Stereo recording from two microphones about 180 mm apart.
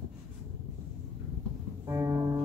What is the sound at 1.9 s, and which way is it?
Music, 15° right (ahead or behind).